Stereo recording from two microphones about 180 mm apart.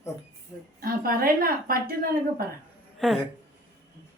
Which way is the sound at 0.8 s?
55° right (ahead or behind).